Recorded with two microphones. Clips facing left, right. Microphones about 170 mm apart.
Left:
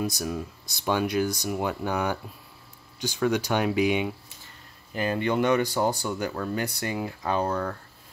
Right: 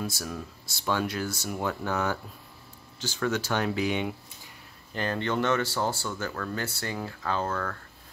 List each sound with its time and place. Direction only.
0.0 s speech: 15° left (ahead or behind)